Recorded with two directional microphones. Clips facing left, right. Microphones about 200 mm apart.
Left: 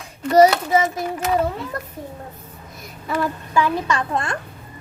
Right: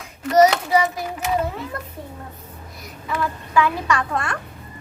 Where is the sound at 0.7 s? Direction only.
25° left (ahead or behind).